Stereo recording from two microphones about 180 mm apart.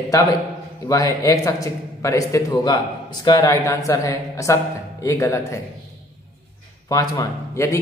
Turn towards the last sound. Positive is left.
turn(degrees=15)  # may be behind; listen again after turning